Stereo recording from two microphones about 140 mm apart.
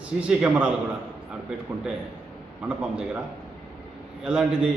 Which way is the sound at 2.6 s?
10° right (ahead or behind).